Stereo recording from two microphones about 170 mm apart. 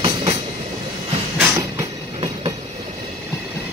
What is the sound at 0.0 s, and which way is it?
Train, 35° right (ahead or behind).